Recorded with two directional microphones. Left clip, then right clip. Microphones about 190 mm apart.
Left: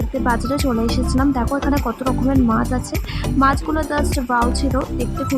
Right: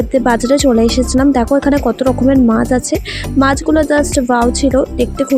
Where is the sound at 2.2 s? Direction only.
20° right (ahead or behind).